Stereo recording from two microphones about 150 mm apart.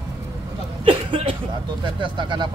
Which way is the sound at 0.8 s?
35° right (ahead or behind).